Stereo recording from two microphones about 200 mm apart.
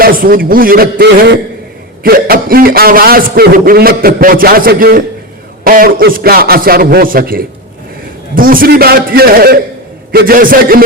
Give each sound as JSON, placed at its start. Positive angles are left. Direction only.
{"t": 0.0, "sound": "a man's voice", "side_deg": -45}